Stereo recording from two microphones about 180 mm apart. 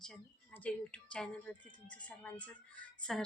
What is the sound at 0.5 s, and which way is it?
A woman's voice, 10° left (ahead or behind).